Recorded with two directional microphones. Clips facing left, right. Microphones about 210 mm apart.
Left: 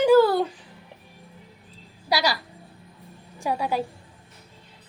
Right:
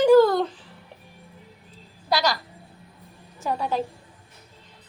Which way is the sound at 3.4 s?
10° left (ahead or behind).